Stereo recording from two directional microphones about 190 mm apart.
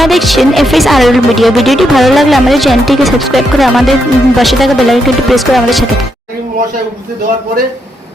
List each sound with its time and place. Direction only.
0.0 s speech: centre (ahead or behind)